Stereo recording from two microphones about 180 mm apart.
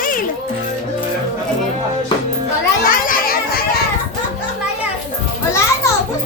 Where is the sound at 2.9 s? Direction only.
50° left (ahead or behind).